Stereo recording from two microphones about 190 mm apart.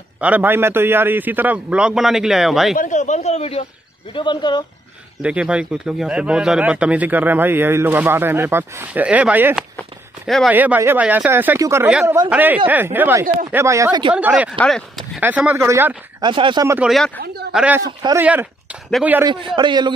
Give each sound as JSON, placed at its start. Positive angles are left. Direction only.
{"t": 0.2, "sound": "speech", "side_deg": -10}
{"t": 2.7, "sound": "speech", "side_deg": 40}
{"t": 5.2, "sound": "speech", "side_deg": -5}
{"t": 14.1, "sound": "speech", "side_deg": -5}
{"t": 16.2, "sound": "a man's voice", "side_deg": -25}
{"t": 16.6, "sound": "speech", "side_deg": -5}
{"t": 17.8, "sound": "a man's voice", "side_deg": -20}
{"t": 18.2, "sound": "speech", "side_deg": -10}
{"t": 19.2, "sound": "a man's voice", "side_deg": -25}